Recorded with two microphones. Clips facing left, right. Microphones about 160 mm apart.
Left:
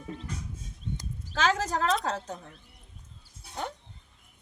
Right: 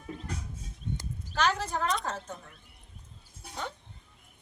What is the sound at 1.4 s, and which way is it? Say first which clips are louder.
Speech: left 2 dB; 90° left.